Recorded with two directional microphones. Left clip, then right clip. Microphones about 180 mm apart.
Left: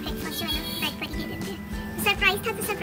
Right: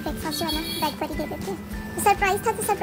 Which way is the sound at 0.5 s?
Centre (ahead or behind).